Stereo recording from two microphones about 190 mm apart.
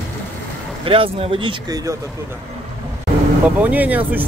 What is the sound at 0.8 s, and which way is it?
Speech, 30° right (ahead or behind).